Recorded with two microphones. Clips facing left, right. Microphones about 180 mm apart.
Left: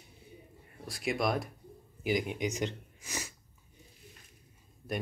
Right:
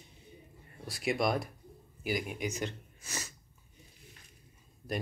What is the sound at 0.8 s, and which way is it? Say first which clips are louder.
Speech: right 1 dB; centre (ahead or behind).